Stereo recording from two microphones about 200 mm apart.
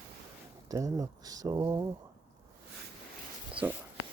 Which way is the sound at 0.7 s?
15° right (ahead or behind).